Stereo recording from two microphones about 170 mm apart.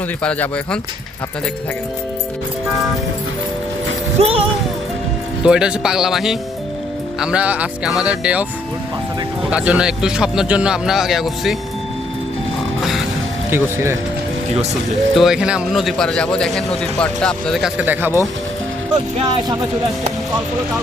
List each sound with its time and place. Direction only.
0.2 s speech: 5° left (ahead or behind)
4.2 s speech: 35° right (ahead or behind)
5.4 s speech: 5° right (ahead or behind)
13.5 s speech: 15° right (ahead or behind)
15.1 s speech: centre (ahead or behind)